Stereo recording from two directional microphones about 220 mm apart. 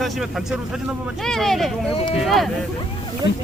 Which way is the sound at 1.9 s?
25° left (ahead or behind).